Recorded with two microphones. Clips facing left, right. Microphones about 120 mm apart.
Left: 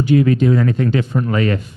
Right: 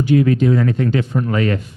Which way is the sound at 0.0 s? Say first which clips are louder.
Even; 20° left (ahead or behind).